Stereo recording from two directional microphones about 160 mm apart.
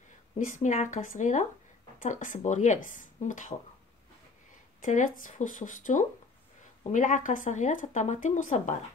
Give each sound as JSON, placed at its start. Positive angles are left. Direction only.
{"t": 0.4, "sound": "speech", "side_deg": 50}
{"t": 4.8, "sound": "speech", "side_deg": 55}